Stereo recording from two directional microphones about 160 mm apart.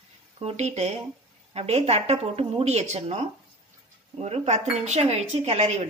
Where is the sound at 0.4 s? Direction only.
40° right (ahead or behind).